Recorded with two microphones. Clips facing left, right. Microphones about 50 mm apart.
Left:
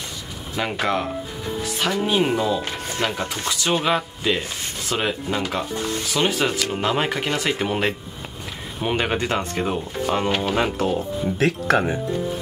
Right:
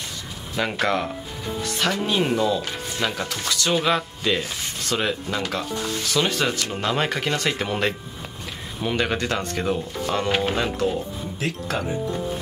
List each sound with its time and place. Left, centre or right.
0.6 s speech: centre
2.6 s a sound: left
3.2 s speech: left
8.8 s speech: left
10.5 s speech: left